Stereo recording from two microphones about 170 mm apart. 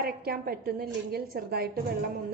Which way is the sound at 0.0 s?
60° right (ahead or behind).